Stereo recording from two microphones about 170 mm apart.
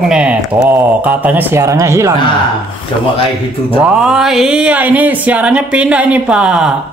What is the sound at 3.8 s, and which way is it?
Speech, 5° right (ahead or behind).